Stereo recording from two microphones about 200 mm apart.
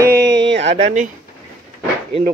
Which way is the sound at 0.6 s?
30° right (ahead or behind).